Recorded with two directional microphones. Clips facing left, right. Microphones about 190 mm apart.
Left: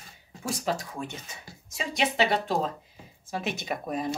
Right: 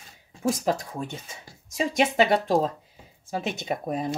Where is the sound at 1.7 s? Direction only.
50° right (ahead or behind).